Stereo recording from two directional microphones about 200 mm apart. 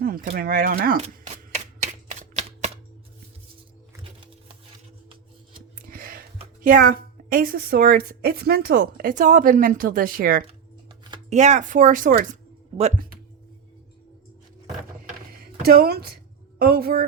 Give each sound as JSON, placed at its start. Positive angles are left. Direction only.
{"t": 0.0, "sound": "a sound", "side_deg": -45}
{"t": 0.3, "sound": "a woman's voice", "side_deg": -45}
{"t": 0.9, "sound": "shuffling cards", "side_deg": -35}
{"t": 5.8, "sound": "a sound", "side_deg": -45}
{"t": 6.6, "sound": "a woman's voice", "side_deg": -45}
{"t": 12.7, "sound": "speech", "side_deg": -25}
{"t": 15.6, "sound": "a woman's voice", "side_deg": -50}